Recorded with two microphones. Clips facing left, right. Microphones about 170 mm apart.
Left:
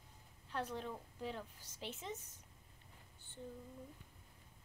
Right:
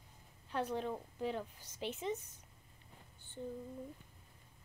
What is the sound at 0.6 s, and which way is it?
Speech, 20° right (ahead or behind).